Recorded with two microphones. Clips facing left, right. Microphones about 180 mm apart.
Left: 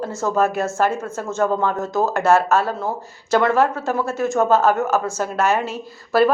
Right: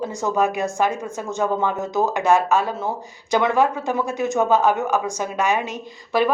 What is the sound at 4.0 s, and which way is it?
Speech, 15° right (ahead or behind).